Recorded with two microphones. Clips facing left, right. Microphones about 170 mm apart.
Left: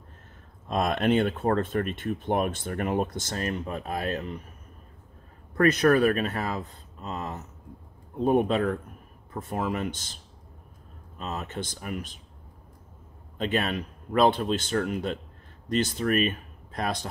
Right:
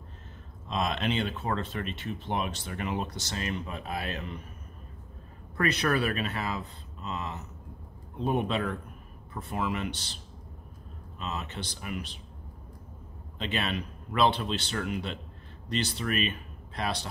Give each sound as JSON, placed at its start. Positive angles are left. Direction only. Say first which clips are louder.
{"t": 0.7, "sound": "speech", "louder": "left 6 dB", "side_deg": 50}
{"t": 5.6, "sound": "speech", "louder": "left 7 dB", "side_deg": 45}
{"t": 11.1, "sound": "speech", "louder": "left 3 dB", "side_deg": 45}
{"t": 13.4, "sound": "speech", "louder": "left 5 dB", "side_deg": 45}